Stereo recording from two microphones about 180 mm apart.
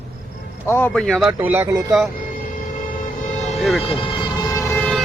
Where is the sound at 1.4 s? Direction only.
10° right (ahead or behind).